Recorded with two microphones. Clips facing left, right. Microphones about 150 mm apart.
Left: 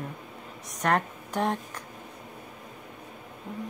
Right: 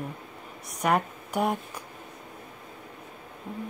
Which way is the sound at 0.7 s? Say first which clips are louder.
Right 1 dB; 10° right (ahead or behind).